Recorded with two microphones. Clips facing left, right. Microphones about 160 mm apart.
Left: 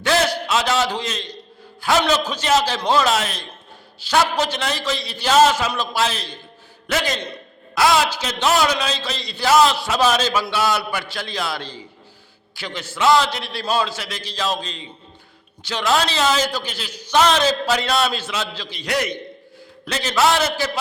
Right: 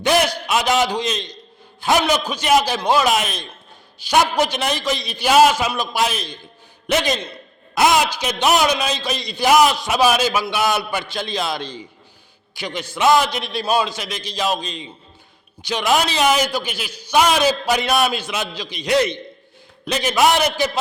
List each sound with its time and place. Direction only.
0.0 s a man's voice: 15° right (ahead or behind)